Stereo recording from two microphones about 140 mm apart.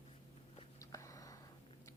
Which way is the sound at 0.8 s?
20° left (ahead or behind).